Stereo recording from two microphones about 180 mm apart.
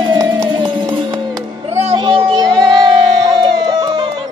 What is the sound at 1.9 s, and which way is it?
Child singing, 25° right (ahead or behind).